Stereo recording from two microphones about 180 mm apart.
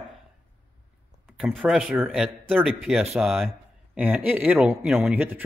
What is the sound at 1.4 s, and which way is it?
Speech, centre (ahead or behind).